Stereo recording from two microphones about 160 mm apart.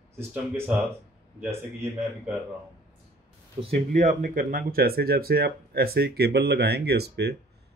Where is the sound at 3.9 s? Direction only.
50° right (ahead or behind); by 7.3 s 90° right.